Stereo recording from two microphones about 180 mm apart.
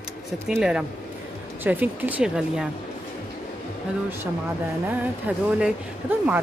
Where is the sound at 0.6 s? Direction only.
5° right (ahead or behind).